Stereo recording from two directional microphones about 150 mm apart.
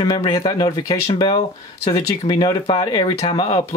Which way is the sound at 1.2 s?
40° left (ahead or behind).